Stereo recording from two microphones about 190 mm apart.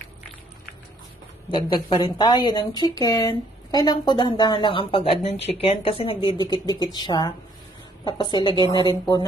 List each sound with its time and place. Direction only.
1.5 s speech: 25° left (ahead or behind)